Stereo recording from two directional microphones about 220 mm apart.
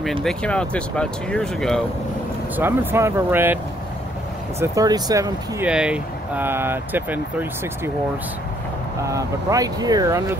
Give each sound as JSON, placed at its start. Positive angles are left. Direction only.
{"t": 0.0, "sound": "speech", "side_deg": 0}
{"t": 2.5, "sound": "speech", "side_deg": -10}
{"t": 4.6, "sound": "speech", "side_deg": -15}
{"t": 5.7, "sound": "speech", "side_deg": -5}
{"t": 9.0, "sound": "speech", "side_deg": -15}